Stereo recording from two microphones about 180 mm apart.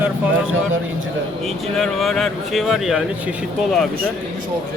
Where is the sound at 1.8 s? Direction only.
Centre (ahead or behind).